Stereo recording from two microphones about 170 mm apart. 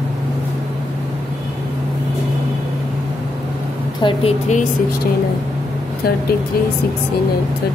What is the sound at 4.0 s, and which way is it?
Speech, 30° left (ahead or behind).